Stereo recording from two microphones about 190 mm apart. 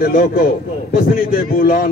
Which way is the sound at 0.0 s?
50° left (ahead or behind).